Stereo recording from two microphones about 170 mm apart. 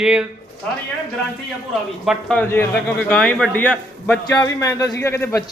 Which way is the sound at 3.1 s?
Centre (ahead or behind).